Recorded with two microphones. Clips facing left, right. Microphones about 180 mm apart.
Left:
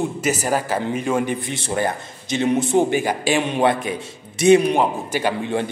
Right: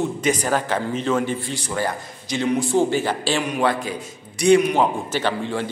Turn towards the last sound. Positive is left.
turn(degrees=15)  # may be behind; listen again after turning